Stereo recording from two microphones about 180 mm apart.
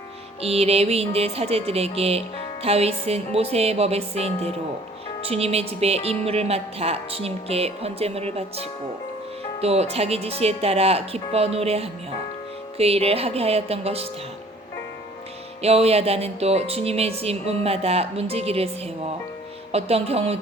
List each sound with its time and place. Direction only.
0.4 s speech: 35° right (ahead or behind)
15.6 s speech: 35° right (ahead or behind)